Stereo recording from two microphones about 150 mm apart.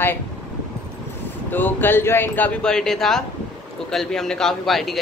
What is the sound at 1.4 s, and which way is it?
A man's voice, 10° left (ahead or behind).